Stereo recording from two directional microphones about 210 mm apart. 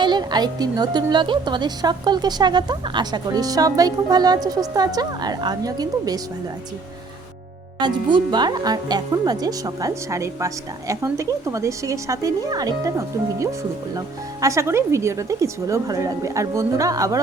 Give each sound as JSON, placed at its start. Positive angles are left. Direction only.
{"t": 0.0, "sound": "a woman's voice", "side_deg": -20}
{"t": 7.8, "sound": "speech", "side_deg": -20}